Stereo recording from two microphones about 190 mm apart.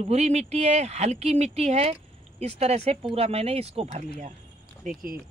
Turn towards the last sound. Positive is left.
turn(degrees=-50)  # may be behind; listen again after turning